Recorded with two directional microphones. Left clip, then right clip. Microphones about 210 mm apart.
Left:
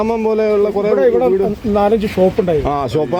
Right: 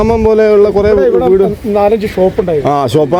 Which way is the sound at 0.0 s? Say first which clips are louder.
Right 7 dB; 40° right (ahead or behind).